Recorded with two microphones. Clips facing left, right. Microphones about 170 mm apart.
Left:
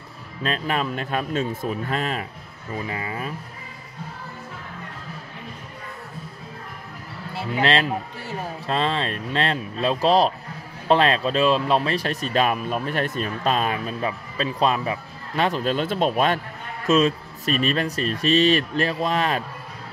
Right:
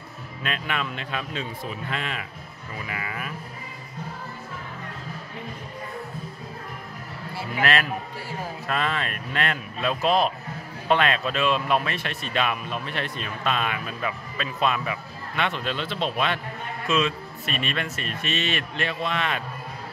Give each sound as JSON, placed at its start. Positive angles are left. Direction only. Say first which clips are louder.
{"t": 0.4, "sound": "speech", "louder": "left 5 dB", "side_deg": 35}
{"t": 7.3, "sound": "speech", "louder": "left 3 dB", "side_deg": 25}